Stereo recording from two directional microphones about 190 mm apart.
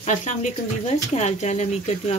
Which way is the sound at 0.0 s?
40° left (ahead or behind).